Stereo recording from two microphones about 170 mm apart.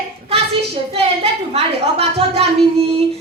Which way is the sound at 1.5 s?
35° right (ahead or behind).